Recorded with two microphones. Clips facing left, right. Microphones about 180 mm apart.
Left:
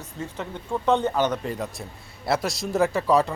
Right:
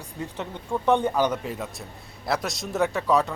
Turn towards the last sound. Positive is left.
turn(degrees=0)  # may be behind; listen again after turning